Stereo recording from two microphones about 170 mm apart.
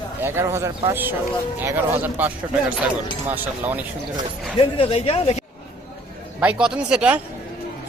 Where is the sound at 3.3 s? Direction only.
10° right (ahead or behind).